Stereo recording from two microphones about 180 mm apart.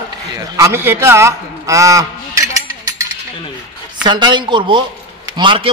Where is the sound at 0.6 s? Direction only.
15° right (ahead or behind).